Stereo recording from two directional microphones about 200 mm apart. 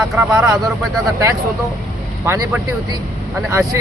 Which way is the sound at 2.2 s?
10° right (ahead or behind).